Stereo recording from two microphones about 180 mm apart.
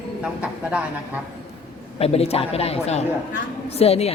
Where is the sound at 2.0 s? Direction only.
35° left (ahead or behind).